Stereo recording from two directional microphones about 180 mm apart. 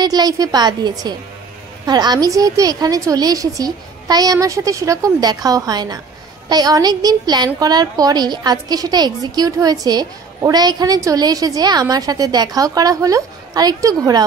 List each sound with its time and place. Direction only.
0.0 s a woman's voice: 20° right (ahead or behind)